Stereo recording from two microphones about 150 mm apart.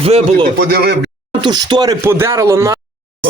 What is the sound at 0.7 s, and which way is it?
Speech, 90° right.